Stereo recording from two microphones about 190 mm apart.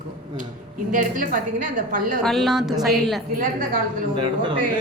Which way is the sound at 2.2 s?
Centre (ahead or behind).